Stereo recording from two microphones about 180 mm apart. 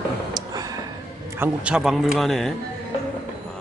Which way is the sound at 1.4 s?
5° right (ahead or behind).